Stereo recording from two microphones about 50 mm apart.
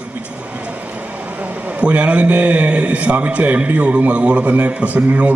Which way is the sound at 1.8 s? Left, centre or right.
Right.